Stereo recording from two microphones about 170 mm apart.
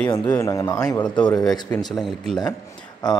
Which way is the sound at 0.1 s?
25° left (ahead or behind).